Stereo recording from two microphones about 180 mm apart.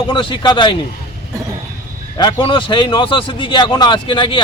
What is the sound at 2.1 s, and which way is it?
Speech, 25° left (ahead or behind).